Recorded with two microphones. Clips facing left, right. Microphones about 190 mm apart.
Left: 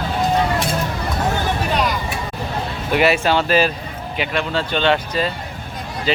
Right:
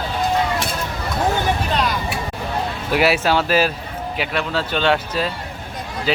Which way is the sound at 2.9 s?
5° right (ahead or behind).